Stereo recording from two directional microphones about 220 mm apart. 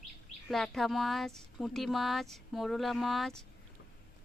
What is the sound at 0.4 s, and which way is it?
Speech, centre (ahead or behind).